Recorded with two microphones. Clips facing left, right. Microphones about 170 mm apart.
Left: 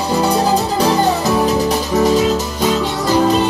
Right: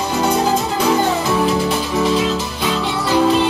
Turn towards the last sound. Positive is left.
turn(degrees=40)  # may be behind; listen again after turning